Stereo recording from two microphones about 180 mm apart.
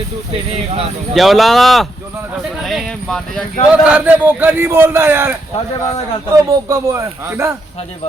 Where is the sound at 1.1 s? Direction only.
Centre (ahead or behind).